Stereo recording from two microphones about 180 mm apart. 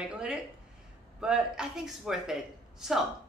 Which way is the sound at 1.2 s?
5° right (ahead or behind).